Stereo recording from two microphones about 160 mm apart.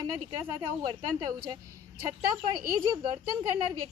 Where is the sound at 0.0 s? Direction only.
25° right (ahead or behind).